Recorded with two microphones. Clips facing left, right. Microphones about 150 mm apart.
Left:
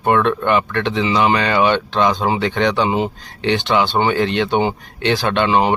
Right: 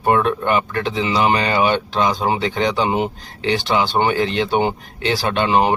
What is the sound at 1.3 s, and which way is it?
Speech, 25° right (ahead or behind).